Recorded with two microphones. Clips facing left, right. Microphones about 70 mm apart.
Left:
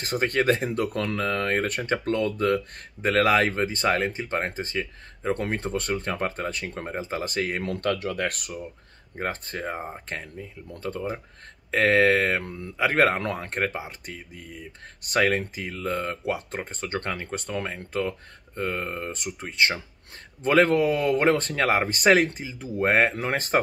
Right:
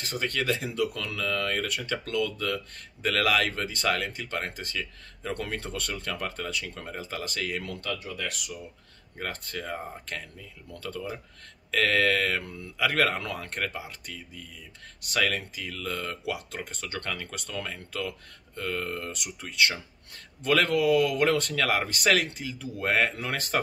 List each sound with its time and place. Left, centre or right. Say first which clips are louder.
0.0 s speech: left 7 dB; left
9.1 s speech: left 5 dB; left